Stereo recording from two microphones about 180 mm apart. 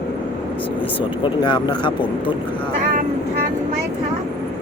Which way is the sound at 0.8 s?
30° left (ahead or behind).